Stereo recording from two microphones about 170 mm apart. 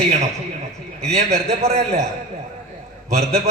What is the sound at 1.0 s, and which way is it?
A man's voice, 40° right (ahead or behind).